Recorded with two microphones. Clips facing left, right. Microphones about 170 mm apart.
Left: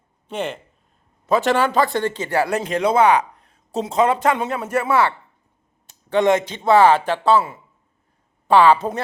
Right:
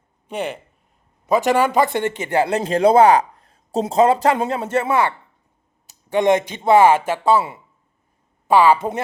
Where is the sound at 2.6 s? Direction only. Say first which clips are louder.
Right 6 dB; 35° right (ahead or behind); by 7.4 s 10° right (ahead or behind).